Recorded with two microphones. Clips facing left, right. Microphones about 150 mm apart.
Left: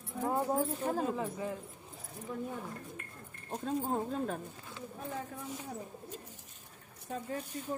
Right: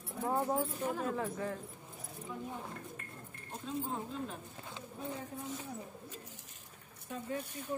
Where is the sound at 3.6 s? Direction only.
50° left (ahead or behind).